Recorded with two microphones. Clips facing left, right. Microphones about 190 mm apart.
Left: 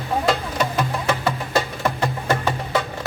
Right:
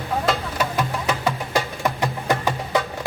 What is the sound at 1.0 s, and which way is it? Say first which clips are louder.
Music: left 1 dB; 15° right (ahead or behind).